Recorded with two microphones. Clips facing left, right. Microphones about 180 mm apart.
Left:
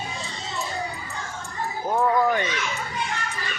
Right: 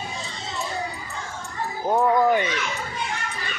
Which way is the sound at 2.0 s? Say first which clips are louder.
Right 2 dB; 20° right (ahead or behind).